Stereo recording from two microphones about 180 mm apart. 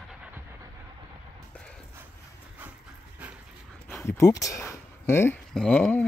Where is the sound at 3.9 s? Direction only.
15° left (ahead or behind).